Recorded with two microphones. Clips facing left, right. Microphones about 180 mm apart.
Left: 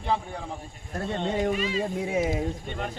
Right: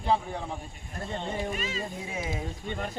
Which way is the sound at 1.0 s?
70° left (ahead or behind).